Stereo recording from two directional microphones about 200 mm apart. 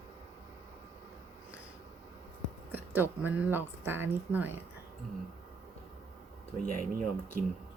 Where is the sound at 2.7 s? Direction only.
10° right (ahead or behind).